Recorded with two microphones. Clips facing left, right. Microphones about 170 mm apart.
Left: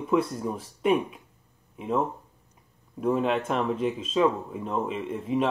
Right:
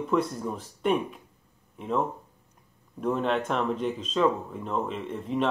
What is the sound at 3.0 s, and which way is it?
Speech, 5° left (ahead or behind).